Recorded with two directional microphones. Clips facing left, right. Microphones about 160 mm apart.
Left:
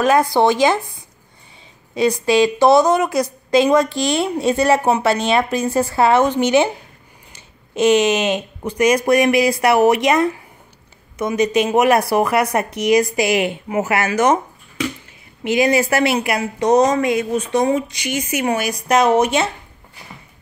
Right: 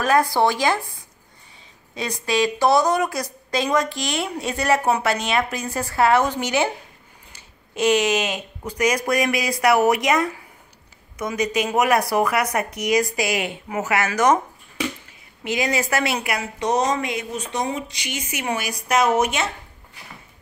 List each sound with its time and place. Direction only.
0.0 s a woman's voice: 20° left (ahead or behind)
2.0 s a woman's voice: 30° left (ahead or behind)
15.4 s speech: 30° left (ahead or behind)